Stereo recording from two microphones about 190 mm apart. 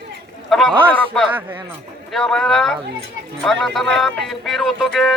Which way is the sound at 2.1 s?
Centre (ahead or behind).